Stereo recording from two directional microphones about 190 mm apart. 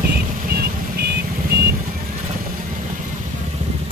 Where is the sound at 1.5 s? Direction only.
60° right (ahead or behind).